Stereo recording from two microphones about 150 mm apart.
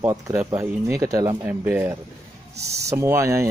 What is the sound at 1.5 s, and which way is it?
Speech, 10° right (ahead or behind).